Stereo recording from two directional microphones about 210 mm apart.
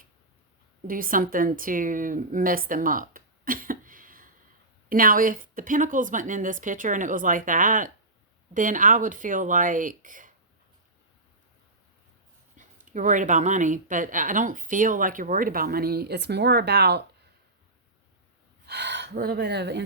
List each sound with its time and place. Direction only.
0.9 s a woman's voice: 40° right (ahead or behind)
12.5 s speech: 35° right (ahead or behind); by 17.0 s 50° right (ahead or behind)
18.6 s speech: 55° right (ahead or behind)